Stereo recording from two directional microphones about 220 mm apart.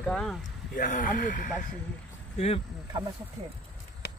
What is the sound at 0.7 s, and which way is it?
Speech, 40° left (ahead or behind).